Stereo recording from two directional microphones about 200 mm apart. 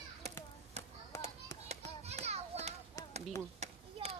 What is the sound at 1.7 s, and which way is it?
Children playing, 30° right (ahead or behind).